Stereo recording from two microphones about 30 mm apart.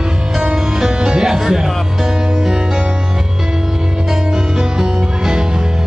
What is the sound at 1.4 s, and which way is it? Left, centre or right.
Music, centre.